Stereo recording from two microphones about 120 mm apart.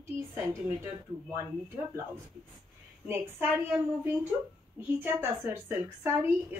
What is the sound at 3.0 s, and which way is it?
Speech, 15° right (ahead or behind).